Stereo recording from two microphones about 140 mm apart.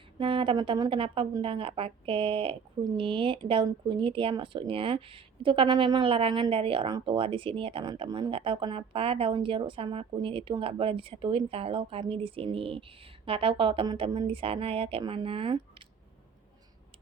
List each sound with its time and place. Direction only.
0.2 s speech: 40° right (ahead or behind)